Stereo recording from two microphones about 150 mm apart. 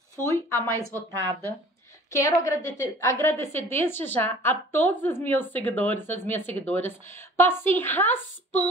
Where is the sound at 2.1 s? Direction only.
20° left (ahead or behind).